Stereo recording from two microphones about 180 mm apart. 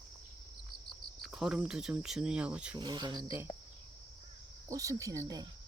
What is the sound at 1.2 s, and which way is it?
Speech, centre (ahead or behind).